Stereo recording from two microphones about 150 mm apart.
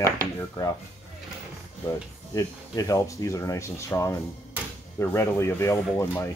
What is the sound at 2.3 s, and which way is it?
Speech, 20° left (ahead or behind).